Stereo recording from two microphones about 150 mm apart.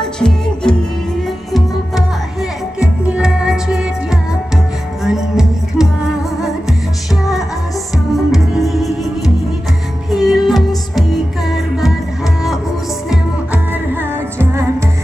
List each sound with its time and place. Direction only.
0.0 s music: 5° left (ahead or behind)
2.8 s music: 5° right (ahead or behind)
5.0 s music: 5° right (ahead or behind)
8.3 s music: centre (ahead or behind)
14.4 s music: 20° right (ahead or behind)